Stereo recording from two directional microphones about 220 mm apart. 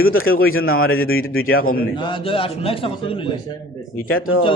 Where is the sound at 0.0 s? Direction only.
70° left (ahead or behind).